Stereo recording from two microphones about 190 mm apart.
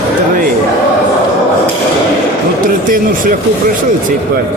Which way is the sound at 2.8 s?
45° right (ahead or behind).